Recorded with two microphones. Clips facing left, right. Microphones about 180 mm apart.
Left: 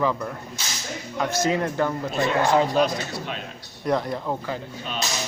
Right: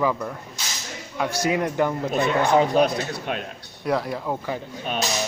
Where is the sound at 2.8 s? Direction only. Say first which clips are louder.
Right 2 dB; 55° right (ahead or behind).